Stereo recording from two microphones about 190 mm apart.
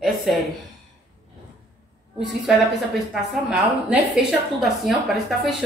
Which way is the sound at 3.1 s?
Centre (ahead or behind).